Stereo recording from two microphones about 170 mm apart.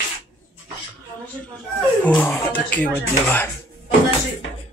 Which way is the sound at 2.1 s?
10° left (ahead or behind).